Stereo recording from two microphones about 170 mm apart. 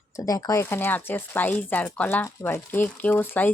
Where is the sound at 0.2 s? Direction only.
20° left (ahead or behind).